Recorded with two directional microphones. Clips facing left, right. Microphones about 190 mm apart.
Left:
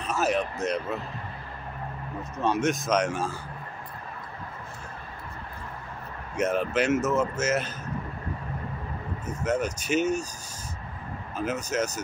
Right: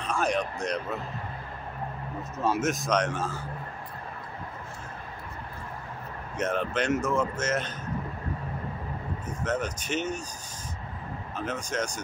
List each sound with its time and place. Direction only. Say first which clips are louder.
0.0 s speech: left 1 dB; 5° left (ahead or behind)
2.3 s speech: left 2 dB; 5° right (ahead or behind); by 3.3 s 10° left (ahead or behind)
6.3 s a man's voice: left 3 dB; 10° left (ahead or behind)
9.2 s a man's voice: left 3 dB; 10° left (ahead or behind)
11.3 s a man's voice: left 4 dB; 5° left (ahead or behind)